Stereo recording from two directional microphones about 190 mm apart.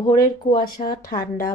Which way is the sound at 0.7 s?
20° left (ahead or behind).